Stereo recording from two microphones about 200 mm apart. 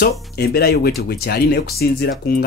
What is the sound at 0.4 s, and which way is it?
Speech, 50° left (ahead or behind).